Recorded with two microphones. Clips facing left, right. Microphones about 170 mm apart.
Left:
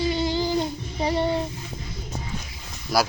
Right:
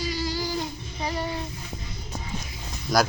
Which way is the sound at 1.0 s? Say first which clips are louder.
Left 7 dB; 30° left (ahead or behind).